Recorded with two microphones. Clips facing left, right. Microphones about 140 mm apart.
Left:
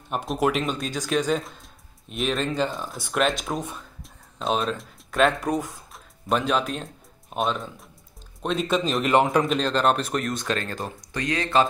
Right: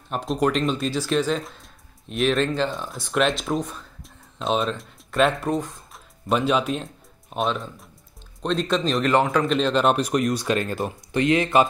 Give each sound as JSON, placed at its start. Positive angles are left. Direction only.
{"t": 0.1, "sound": "speech", "side_deg": 5}
{"t": 9.0, "sound": "a man's voice", "side_deg": 20}
{"t": 9.5, "sound": "speech", "side_deg": 0}